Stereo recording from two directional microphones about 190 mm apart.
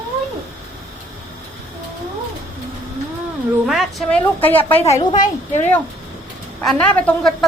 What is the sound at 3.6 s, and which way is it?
A woman's voice, centre (ahead or behind).